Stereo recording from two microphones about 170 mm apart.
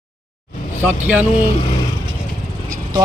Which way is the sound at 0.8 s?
10° right (ahead or behind).